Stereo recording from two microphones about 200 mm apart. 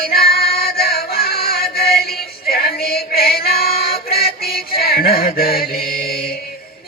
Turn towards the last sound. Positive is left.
turn(degrees=50)  # may be behind; listen again after turning